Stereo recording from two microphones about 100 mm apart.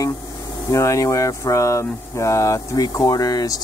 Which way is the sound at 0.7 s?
30° left (ahead or behind).